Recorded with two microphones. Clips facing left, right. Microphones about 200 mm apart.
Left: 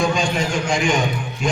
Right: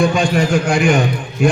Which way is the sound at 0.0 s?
60° right (ahead or behind).